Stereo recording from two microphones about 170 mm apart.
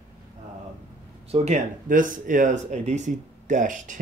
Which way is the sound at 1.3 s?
40° right (ahead or behind).